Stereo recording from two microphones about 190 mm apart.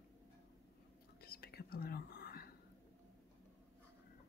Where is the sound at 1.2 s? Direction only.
55° left (ahead or behind).